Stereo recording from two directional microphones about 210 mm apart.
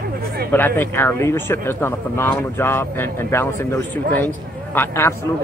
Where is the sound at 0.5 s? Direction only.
10° left (ahead or behind).